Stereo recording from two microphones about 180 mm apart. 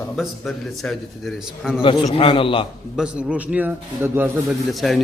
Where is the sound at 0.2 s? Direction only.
Centre (ahead or behind).